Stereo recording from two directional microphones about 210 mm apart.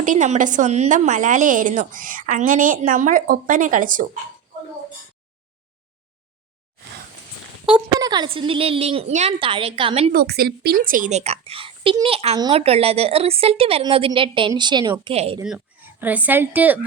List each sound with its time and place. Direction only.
0.0 s a woman's voice: 35° right (ahead or behind)
7.6 s speech: 15° right (ahead or behind)
10.1 s speech: 50° right (ahead or behind); by 15.4 s 30° right (ahead or behind)
15.4 s a woman's voice: 10° right (ahead or behind)